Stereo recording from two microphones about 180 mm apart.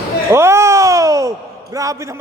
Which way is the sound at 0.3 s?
15° right (ahead or behind).